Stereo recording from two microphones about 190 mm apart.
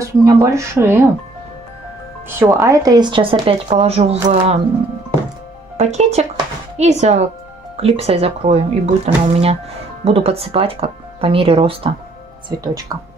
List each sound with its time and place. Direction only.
0.0 s speech: 15° right (ahead or behind)
2.2 s speech: 15° right (ahead or behind); by 4.6 s 35° right (ahead or behind)
5.8 s speech: 35° right (ahead or behind); by 12.9 s 20° right (ahead or behind)